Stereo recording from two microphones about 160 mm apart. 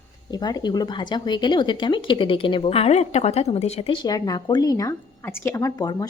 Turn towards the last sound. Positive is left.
turn(degrees=25)  # may be behind; listen again after turning